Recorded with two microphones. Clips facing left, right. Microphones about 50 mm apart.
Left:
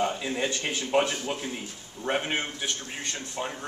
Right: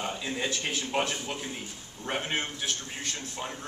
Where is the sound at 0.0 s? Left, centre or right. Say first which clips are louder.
Left 4 dB; centre.